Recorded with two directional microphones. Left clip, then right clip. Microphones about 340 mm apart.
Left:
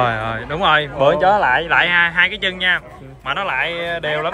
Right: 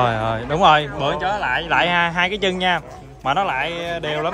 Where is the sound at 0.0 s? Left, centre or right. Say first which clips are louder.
Left 1 dB; centre.